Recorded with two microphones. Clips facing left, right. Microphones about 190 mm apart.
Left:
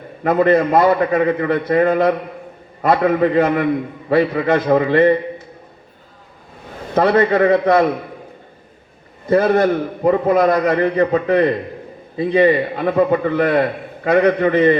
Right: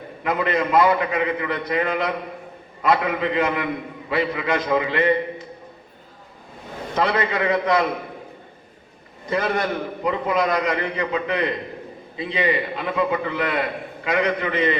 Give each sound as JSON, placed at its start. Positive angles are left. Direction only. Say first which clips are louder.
{"t": 0.2, "sound": "a man's voice", "louder": "left 9 dB", "side_deg": 45}
{"t": 6.9, "sound": "a man's voice", "louder": "left 8 dB", "side_deg": 50}
{"t": 9.3, "sound": "a man's voice", "louder": "left 9 dB", "side_deg": 50}
{"t": 10.5, "sound": "a man's voice", "louder": "left 7 dB", "side_deg": 50}